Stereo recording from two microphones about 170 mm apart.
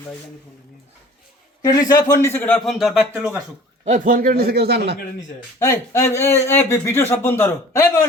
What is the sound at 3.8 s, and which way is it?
A man's voice, 50° right (ahead or behind).